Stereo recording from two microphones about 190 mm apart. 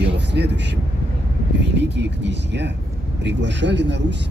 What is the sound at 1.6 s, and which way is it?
Speech, 65° right (ahead or behind).